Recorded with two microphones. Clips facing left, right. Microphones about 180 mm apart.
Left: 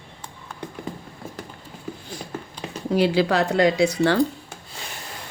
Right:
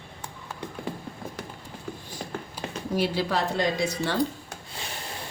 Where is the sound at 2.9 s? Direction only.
80° left.